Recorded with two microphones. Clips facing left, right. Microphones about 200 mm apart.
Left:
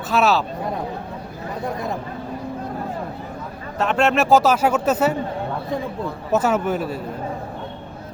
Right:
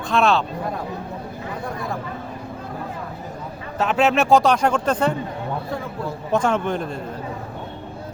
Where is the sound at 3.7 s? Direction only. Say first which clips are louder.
Even; centre (ahead or behind).